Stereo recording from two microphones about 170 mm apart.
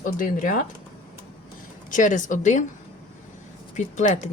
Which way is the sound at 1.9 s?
50° left (ahead or behind).